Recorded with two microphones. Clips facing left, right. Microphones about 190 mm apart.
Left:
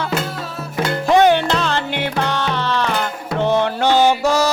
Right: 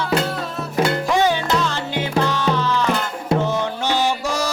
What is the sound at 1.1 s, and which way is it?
Music, 65° left (ahead or behind).